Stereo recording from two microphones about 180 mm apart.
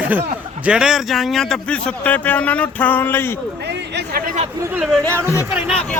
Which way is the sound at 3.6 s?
70° right (ahead or behind).